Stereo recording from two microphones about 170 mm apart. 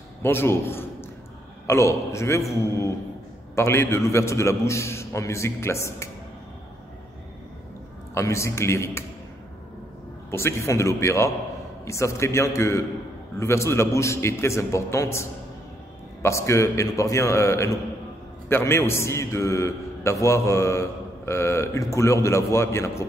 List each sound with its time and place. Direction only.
0.2 s a man's voice: 15° left (ahead or behind)
8.1 s a man's voice: 15° left (ahead or behind)
10.3 s a man's voice: 15° left (ahead or behind)